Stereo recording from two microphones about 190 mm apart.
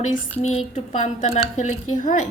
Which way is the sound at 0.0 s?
35° left (ahead or behind).